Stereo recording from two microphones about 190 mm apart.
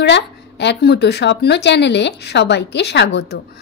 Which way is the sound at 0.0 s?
65° left (ahead or behind).